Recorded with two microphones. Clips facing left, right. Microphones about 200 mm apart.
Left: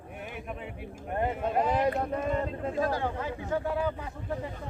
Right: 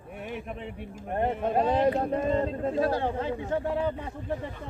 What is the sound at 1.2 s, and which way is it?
Speech, 25° right (ahead or behind).